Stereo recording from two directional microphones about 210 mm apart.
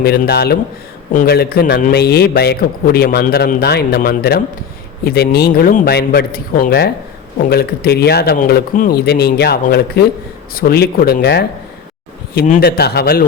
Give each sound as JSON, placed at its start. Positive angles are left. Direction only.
{"t": 0.0, "sound": "a man's voice", "side_deg": 50}